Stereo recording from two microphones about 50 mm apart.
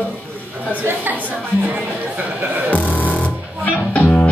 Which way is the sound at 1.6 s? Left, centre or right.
Right.